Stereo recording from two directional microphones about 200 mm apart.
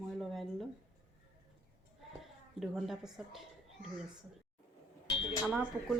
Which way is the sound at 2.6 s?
Centre (ahead or behind).